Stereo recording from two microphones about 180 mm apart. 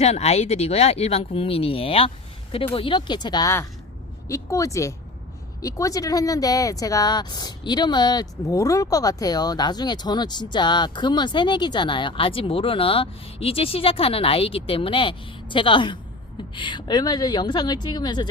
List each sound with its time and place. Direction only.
0.0 s speech: 35° left (ahead or behind)